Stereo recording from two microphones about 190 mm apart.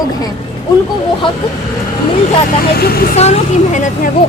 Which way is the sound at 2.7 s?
55° left (ahead or behind).